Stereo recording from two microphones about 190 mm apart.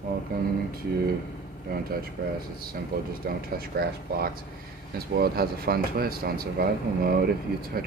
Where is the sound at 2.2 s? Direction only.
50° right (ahead or behind).